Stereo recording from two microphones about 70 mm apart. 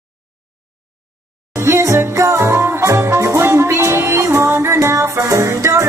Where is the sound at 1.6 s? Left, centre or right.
Right.